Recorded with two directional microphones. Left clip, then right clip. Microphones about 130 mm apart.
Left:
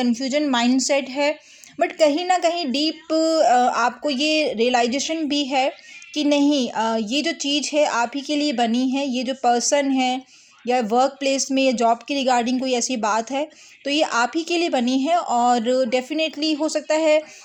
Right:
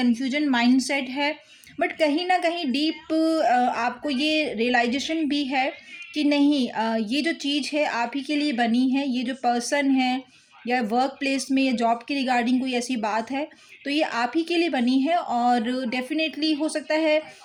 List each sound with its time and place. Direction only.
0.0 s speech: 40° left (ahead or behind)